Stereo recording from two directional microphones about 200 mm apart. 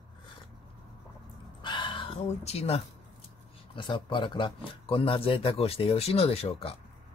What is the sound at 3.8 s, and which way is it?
Speech, 25° left (ahead or behind).